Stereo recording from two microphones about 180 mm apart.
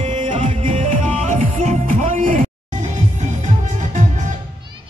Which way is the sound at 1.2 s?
45° right (ahead or behind).